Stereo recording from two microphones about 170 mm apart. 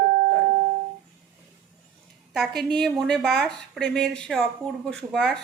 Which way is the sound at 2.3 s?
Centre (ahead or behind).